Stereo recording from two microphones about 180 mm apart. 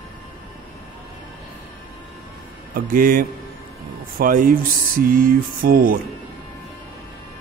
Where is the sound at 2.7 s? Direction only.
50° right (ahead or behind).